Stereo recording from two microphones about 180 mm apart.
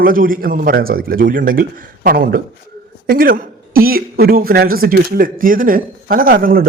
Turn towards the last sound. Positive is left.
turn(degrees=-50)  # may be behind; listen again after turning